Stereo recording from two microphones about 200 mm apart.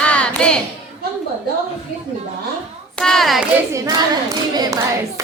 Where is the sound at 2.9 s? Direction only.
5° left (ahead or behind).